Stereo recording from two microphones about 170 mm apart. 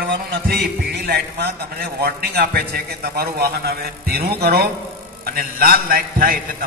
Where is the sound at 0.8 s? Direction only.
65° right (ahead or behind).